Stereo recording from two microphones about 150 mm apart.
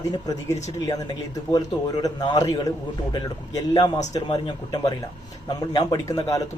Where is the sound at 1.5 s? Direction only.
25° left (ahead or behind).